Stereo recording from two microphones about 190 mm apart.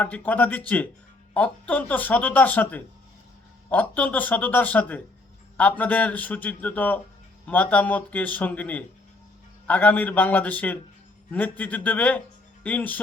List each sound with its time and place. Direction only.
0.0 s speech: 10° left (ahead or behind)